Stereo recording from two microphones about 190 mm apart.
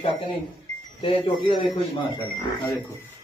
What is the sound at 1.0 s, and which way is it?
Speech, 25° left (ahead or behind).